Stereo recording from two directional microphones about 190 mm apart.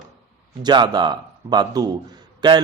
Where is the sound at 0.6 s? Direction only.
20° right (ahead or behind).